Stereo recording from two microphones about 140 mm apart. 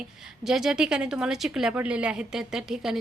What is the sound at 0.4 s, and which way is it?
A woman's voice, 5° right (ahead or behind).